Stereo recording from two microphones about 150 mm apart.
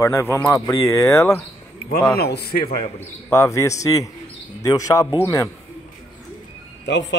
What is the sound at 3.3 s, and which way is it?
Speech, 20° left (ahead or behind).